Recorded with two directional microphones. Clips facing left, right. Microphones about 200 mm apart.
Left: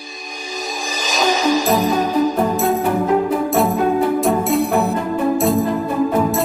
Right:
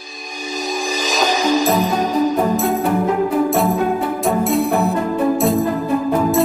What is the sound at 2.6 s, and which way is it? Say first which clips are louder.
Music: even; centre (ahead or behind).